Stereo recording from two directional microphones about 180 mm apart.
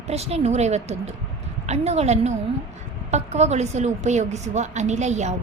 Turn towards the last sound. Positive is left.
turn(degrees=-40)  # may be behind; listen again after turning